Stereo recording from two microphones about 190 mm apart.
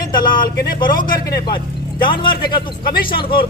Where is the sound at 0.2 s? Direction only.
50° left (ahead or behind).